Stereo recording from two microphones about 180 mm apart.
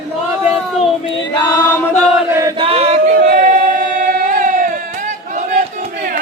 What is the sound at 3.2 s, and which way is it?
Singing, 50° right (ahead or behind).